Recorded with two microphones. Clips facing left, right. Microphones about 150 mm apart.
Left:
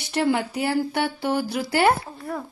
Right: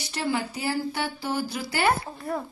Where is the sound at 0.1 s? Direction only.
55° left (ahead or behind).